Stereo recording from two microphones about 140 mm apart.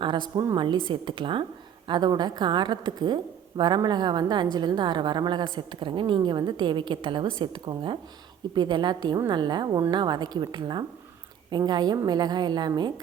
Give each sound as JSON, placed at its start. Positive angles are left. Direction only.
{"t": 0.0, "sound": "a woman's voice", "side_deg": -35}